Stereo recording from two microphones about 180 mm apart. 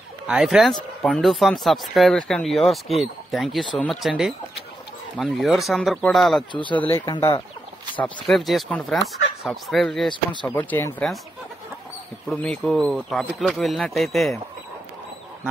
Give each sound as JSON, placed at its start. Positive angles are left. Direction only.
{"t": 0.3, "sound": "speech", "side_deg": -5}
{"t": 6.5, "sound": "speech", "side_deg": 25}
{"t": 8.0, "sound": "speech", "side_deg": 0}
{"t": 12.3, "sound": "speech", "side_deg": 0}